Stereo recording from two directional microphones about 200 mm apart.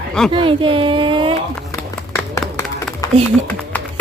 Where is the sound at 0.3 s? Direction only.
25° right (ahead or behind).